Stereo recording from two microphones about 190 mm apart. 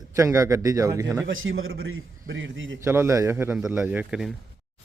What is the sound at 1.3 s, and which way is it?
A man's voice, 90° right.